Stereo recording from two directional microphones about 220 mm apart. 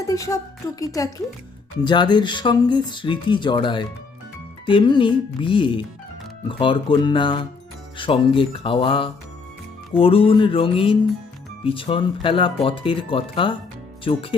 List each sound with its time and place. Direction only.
0.1 s speech: 15° left (ahead or behind)